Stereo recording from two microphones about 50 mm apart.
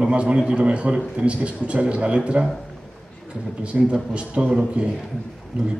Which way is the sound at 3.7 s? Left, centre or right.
Right.